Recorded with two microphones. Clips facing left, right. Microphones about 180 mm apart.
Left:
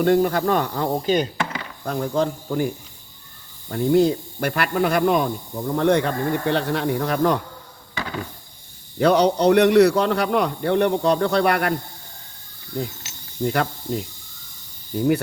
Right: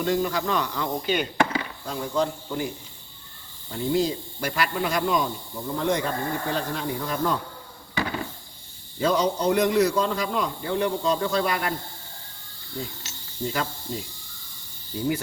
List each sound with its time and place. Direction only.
0.0 s speech: 55° left (ahead or behind); by 1.3 s 40° left (ahead or behind)
1.8 s speech: 55° left (ahead or behind)
3.7 s speech: 55° left (ahead or behind)
9.0 s a man's voice: 70° left (ahead or behind)
13.4 s speech: 60° left (ahead or behind)